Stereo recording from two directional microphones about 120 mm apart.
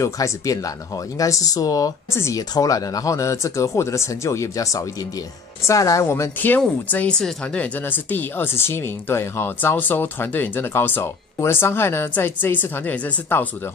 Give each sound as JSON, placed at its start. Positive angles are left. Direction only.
{"t": 0.0, "sound": "speech", "side_deg": 25}